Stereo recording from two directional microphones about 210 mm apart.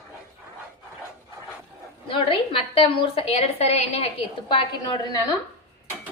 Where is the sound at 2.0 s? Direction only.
25° left (ahead or behind).